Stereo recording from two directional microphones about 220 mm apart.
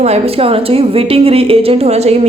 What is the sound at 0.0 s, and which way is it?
A woman's voice, 30° right (ahead or behind).